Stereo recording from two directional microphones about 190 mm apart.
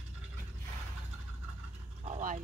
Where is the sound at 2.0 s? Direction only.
40° right (ahead or behind).